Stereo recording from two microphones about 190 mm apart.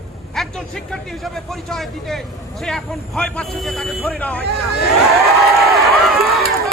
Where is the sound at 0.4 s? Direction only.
Centre (ahead or behind).